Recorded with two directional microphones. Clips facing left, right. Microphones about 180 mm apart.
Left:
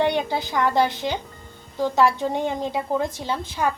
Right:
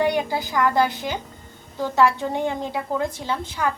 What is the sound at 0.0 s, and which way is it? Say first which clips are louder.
A woman's voice: even; 20° left (ahead or behind).